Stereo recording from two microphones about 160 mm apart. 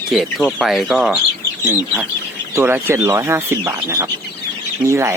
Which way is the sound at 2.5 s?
15° right (ahead or behind).